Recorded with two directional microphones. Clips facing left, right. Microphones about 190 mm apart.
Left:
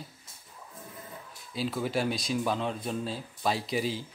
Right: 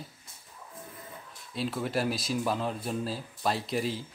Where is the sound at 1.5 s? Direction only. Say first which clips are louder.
Left 1 dB; centre (ahead or behind).